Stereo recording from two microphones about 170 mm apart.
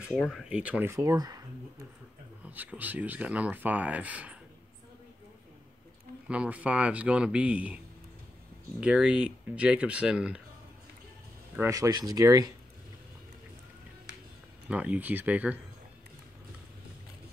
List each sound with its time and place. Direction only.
0.0 s speech: 5° right (ahead or behind); by 1.4 s 20° right (ahead or behind)
2.4 s speech: 10° right (ahead or behind)
6.2 s speech: 5° right (ahead or behind)
11.7 s speech: 20° right (ahead or behind)
14.7 s speech: 10° right (ahead or behind)